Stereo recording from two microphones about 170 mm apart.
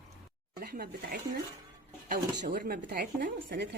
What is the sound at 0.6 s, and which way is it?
Speech, 65° right (ahead or behind).